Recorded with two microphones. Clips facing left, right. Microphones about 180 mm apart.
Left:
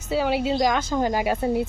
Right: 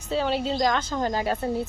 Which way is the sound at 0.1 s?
10° left (ahead or behind).